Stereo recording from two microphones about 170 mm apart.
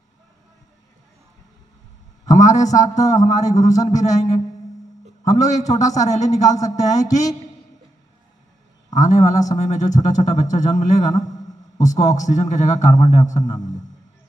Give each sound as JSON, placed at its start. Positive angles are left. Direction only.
{"t": 2.2, "sound": "a man's voice", "side_deg": 45}
{"t": 8.9, "sound": "a man's voice", "side_deg": 45}